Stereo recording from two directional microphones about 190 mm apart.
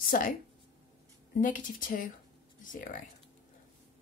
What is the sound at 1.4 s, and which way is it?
Speech, 45° left (ahead or behind).